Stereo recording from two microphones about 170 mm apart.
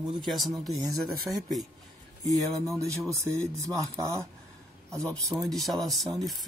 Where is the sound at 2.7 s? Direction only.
20° right (ahead or behind).